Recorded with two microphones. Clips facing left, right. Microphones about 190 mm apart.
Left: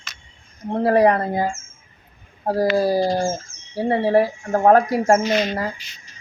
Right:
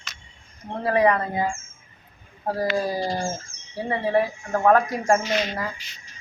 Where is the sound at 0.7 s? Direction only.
35° left (ahead or behind).